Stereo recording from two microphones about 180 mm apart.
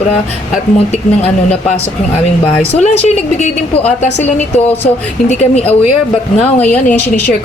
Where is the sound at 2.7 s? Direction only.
35° left (ahead or behind).